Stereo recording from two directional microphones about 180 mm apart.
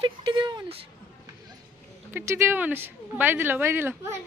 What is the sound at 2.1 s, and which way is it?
A woman's voice, 15° right (ahead or behind).